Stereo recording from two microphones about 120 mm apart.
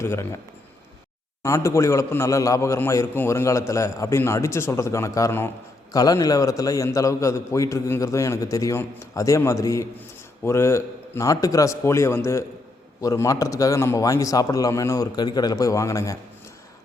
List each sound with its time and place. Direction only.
0.0 s a man's voice: 20° left (ahead or behind)
1.4 s a man's voice: 25° left (ahead or behind)